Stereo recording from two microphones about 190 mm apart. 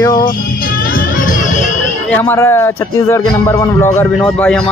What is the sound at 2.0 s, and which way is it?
A man's voice, 10° left (ahead or behind).